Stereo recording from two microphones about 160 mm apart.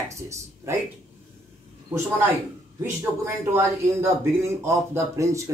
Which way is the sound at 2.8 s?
15° right (ahead or behind).